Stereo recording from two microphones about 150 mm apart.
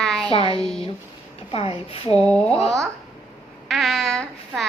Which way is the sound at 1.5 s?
40° left (ahead or behind).